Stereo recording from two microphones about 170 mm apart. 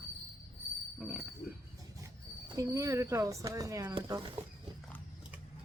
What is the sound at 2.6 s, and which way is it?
Speech, 20° right (ahead or behind).